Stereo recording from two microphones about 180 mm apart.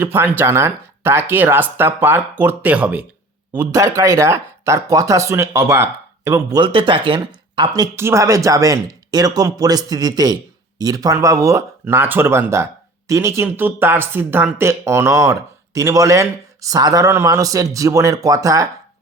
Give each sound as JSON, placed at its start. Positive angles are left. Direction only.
{"t": 0.0, "sound": "speech", "side_deg": -10}